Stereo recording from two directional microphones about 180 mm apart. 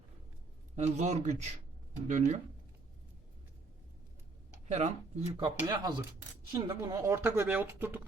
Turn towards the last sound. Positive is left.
turn(degrees=-10)  # may be behind; listen again after turning